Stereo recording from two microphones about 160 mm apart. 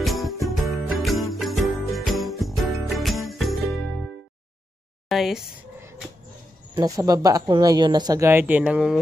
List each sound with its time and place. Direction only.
0.0 s music: centre (ahead or behind)
1.9 s jingle bell: centre (ahead or behind)
5.0 s speech: centre (ahead or behind)
6.7 s speech: 25° right (ahead or behind); by 8.9 s 5° right (ahead or behind)